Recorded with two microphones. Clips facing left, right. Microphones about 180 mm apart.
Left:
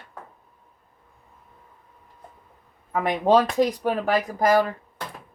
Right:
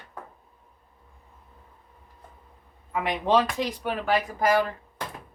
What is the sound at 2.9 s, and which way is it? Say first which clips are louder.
Speech: left 4 dB; 45° left (ahead or behind).